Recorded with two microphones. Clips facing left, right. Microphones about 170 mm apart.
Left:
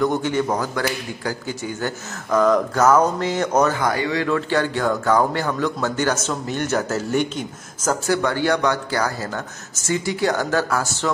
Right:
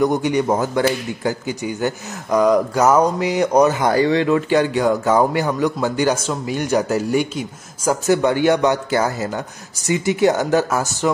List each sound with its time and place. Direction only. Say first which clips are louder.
0.0 s a man's voice: right 3 dB; 15° right (ahead or behind)
3.9 s speech: right 7 dB; 30° right (ahead or behind)
4.3 s a man's voice: right 4 dB; 15° right (ahead or behind)